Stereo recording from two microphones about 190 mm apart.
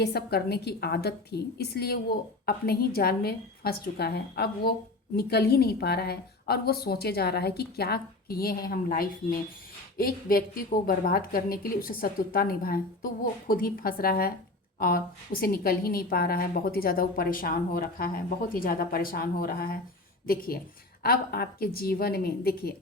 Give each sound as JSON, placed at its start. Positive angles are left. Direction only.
{"t": 0.0, "sound": "a woman's voice", "side_deg": 55}